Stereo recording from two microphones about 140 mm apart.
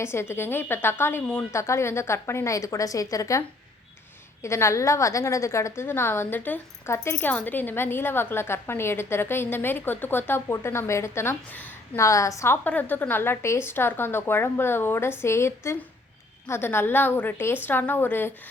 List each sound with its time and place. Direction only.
0.0 s a woman's voice: 20° left (ahead or behind)
4.4 s a woman's voice: 20° left (ahead or behind)